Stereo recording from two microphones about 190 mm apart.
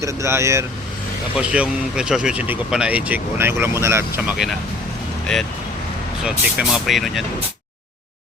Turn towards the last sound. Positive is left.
turn(degrees=0)  # may be behind; listen again after turning